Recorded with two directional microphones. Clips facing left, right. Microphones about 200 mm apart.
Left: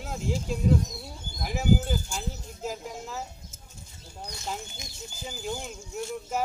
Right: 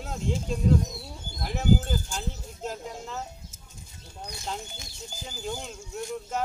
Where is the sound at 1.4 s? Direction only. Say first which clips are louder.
Even; 5° left (ahead or behind).